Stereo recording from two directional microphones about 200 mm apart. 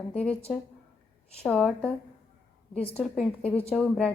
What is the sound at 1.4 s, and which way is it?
Speech, 5° left (ahead or behind).